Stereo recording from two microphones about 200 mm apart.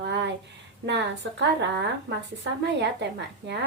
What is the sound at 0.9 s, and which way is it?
A woman's voice, 60° right (ahead or behind).